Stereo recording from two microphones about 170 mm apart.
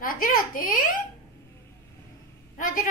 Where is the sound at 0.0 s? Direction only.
55° left (ahead or behind).